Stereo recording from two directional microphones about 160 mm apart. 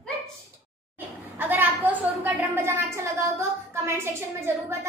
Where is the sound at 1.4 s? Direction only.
10° right (ahead or behind).